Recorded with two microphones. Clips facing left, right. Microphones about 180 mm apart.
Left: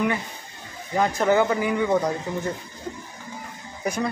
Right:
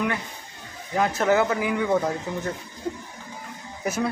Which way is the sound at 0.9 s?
Centre (ahead or behind).